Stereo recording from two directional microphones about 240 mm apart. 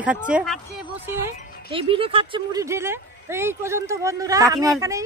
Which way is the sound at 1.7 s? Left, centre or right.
Right.